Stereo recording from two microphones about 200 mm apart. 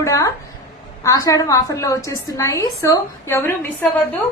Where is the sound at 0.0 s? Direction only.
15° left (ahead or behind).